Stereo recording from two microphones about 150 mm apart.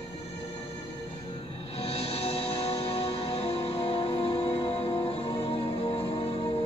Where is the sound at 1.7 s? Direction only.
40° left (ahead or behind).